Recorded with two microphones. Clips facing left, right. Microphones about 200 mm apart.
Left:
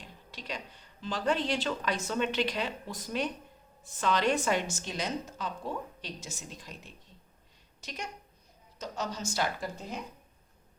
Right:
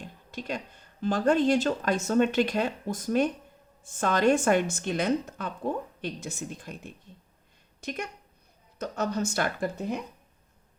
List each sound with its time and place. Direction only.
0.0 s a woman's voice: 50° right (ahead or behind)